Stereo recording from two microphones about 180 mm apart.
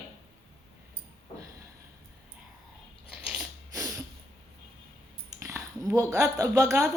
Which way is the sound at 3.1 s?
5° right (ahead or behind).